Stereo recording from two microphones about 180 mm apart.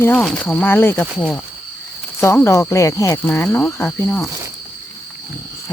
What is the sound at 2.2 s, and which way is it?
Cricket, 15° left (ahead or behind).